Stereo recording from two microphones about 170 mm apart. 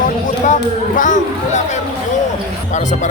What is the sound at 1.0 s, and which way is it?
Speech, 50° left (ahead or behind).